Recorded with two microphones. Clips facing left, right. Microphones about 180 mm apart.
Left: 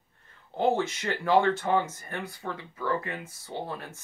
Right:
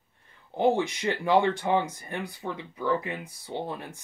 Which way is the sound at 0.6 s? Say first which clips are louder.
Right 2 dB; 15° right (ahead or behind).